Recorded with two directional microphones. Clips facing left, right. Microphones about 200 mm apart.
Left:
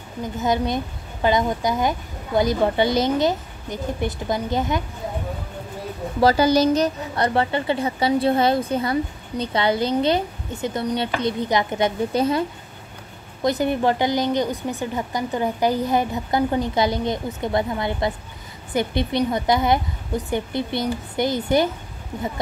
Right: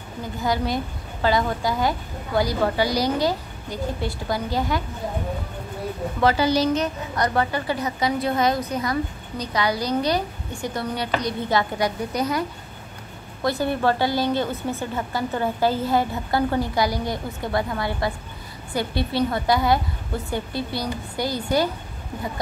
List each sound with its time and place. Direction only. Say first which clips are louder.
0.4 s a woman's voice: left 2 dB; 20° left (ahead or behind)
6.2 s a woman's voice: left 3 dB; 45° left (ahead or behind); by 21.6 s 20° left (ahead or behind)